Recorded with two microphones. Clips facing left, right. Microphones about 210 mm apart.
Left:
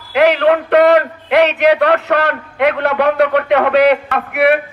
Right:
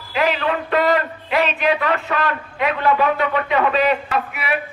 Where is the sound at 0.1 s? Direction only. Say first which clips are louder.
Left 9 dB; 75° left (ahead or behind).